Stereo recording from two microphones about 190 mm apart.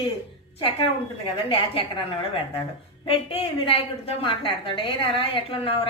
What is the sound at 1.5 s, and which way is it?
A woman's voice, 30° left (ahead or behind).